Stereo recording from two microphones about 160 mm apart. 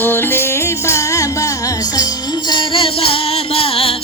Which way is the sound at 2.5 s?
30° left (ahead or behind).